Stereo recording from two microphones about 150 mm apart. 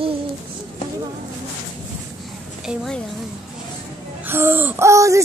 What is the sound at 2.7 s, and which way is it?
Speech, centre (ahead or behind).